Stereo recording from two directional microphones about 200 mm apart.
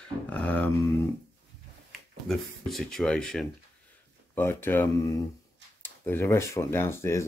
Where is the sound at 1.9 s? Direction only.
Centre (ahead or behind).